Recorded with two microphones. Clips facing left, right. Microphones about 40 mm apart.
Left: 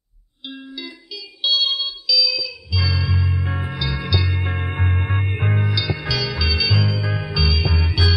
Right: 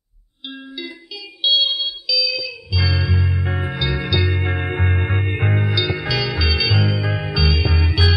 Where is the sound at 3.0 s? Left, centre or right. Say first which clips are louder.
Right 2 dB; centre.